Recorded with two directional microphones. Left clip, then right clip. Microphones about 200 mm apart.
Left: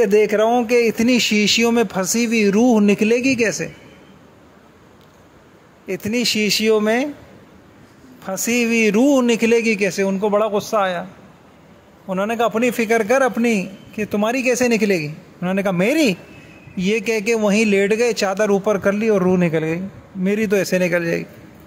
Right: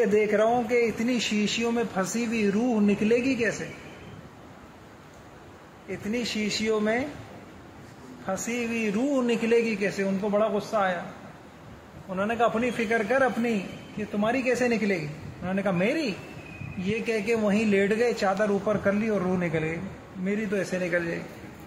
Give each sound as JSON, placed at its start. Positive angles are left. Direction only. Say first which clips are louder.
{"t": 0.0, "sound": "speech", "louder": "left 7 dB", "side_deg": 55}
{"t": 5.9, "sound": "speech", "louder": "left 10 dB", "side_deg": 50}
{"t": 8.3, "sound": "a man's voice", "louder": "left 10 dB", "side_deg": 55}
{"t": 12.1, "sound": "a man's voice", "louder": "left 6 dB", "side_deg": 50}